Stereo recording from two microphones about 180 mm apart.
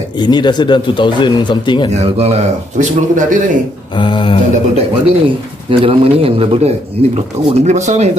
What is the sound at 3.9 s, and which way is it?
Speech, 25° left (ahead or behind).